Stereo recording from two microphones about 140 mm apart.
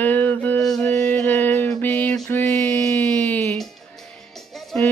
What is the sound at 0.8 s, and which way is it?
Music, 15° left (ahead or behind).